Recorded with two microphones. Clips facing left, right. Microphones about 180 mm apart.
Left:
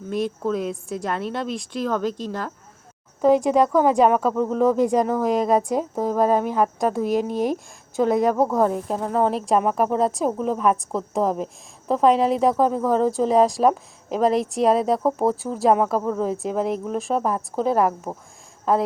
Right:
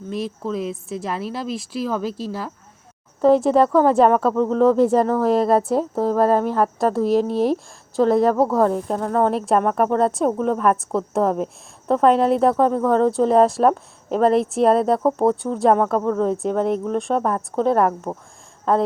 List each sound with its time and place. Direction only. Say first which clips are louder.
0.1 s a woman's voice: left 2 dB; centre (ahead or behind)
3.2 s speech: right 2 dB; 15° left (ahead or behind)
8.7 s a woman's voice: right 2 dB; 5° left (ahead or behind)